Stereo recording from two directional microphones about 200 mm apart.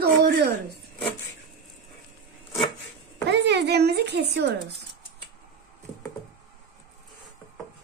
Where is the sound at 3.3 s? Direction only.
60° right (ahead or behind).